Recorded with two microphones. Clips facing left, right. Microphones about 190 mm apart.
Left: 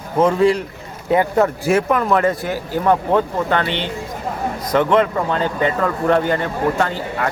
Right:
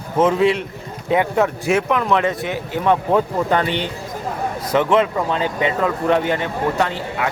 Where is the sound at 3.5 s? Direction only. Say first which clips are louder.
Right 1 dB; 10° right (ahead or behind).